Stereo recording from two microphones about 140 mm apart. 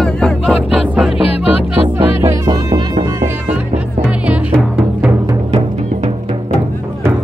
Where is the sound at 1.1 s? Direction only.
45° left (ahead or behind).